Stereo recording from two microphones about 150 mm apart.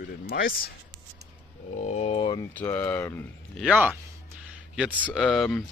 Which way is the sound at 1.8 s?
45° left (ahead or behind).